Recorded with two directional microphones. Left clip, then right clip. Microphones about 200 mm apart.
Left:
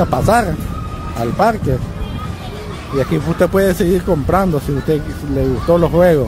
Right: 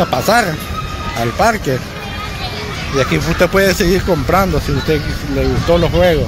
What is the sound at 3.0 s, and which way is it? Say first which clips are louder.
Speech: right 2 dB; 15° left (ahead or behind).